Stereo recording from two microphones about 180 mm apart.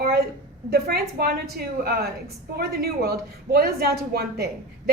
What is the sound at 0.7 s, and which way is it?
Speech, 60° right (ahead or behind).